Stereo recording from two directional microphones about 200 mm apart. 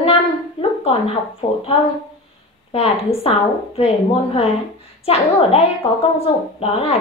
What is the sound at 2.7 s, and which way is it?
A woman's voice, 30° left (ahead or behind).